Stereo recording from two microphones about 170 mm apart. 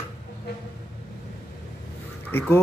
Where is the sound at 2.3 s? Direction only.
15° left (ahead or behind).